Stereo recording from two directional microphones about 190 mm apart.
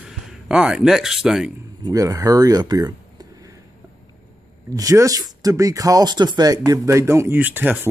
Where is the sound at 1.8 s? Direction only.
20° right (ahead or behind).